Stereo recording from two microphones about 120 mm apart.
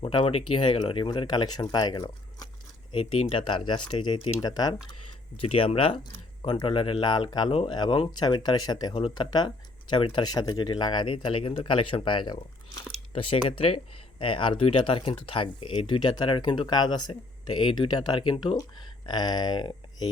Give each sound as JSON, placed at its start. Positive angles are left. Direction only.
{"t": 0.0, "sound": "a sound", "side_deg": 40}
{"t": 0.3, "sound": "speech", "side_deg": 50}
{"t": 2.9, "sound": "speech", "side_deg": 50}
{"t": 5.5, "sound": "speech", "side_deg": 50}